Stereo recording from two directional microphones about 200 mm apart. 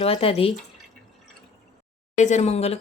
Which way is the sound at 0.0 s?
30° left (ahead or behind).